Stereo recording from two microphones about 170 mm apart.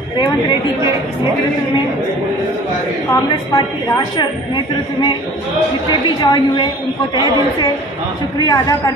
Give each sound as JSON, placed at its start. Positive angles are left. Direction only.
{"t": 3.5, "sound": "a woman's voice", "side_deg": 25}
{"t": 6.2, "sound": "a woman's voice", "side_deg": 25}
{"t": 8.5, "sound": "a woman's voice", "side_deg": 20}